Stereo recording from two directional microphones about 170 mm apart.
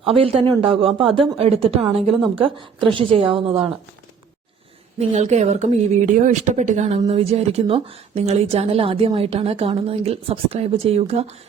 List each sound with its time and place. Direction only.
0.0 s speech: 35° right (ahead or behind)
4.9 s speech: 40° right (ahead or behind)